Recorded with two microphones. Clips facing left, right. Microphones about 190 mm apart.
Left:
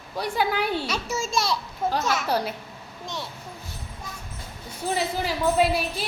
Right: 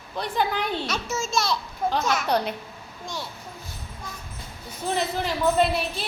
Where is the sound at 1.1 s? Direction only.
35° left (ahead or behind).